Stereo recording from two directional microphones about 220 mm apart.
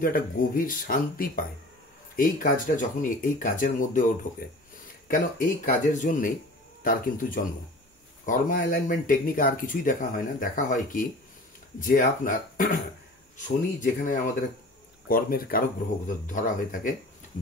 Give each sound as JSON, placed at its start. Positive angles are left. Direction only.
{"t": 0.0, "sound": "speech", "side_deg": 40}